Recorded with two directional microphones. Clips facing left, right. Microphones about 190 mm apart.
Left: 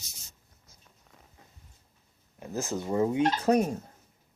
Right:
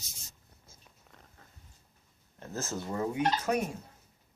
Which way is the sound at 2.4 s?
15° left (ahead or behind).